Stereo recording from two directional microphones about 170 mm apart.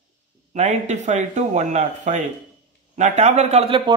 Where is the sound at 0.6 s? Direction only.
45° right (ahead or behind).